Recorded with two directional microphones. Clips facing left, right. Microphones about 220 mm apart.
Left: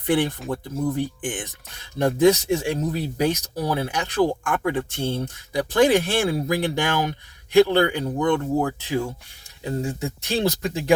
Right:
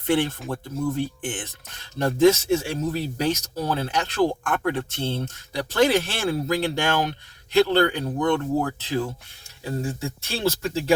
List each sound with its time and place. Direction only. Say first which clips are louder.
0.1 s speech: left 1 dB; 15° left (ahead or behind)